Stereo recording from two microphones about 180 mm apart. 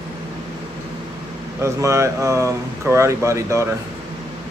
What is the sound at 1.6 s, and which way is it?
Speech, 15° right (ahead or behind).